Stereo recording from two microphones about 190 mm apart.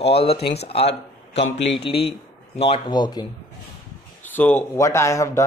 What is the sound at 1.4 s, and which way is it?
Speech, 75° left (ahead or behind).